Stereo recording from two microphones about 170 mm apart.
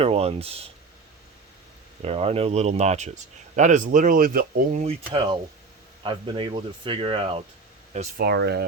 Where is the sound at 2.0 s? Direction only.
35° right (ahead or behind); by 4.8 s 55° right (ahead or behind).